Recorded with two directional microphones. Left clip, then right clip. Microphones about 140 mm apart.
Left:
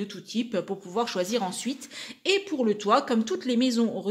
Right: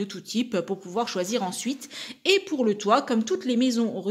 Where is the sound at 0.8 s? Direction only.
5° right (ahead or behind).